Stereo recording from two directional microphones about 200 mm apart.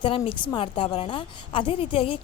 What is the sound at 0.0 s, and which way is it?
Speech, 25° left (ahead or behind).